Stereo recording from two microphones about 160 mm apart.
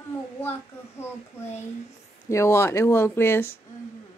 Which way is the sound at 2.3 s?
15° left (ahead or behind).